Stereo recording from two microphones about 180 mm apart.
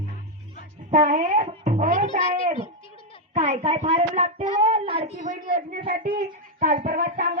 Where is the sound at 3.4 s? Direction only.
35° right (ahead or behind).